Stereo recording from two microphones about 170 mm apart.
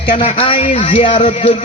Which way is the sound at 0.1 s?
35° left (ahead or behind).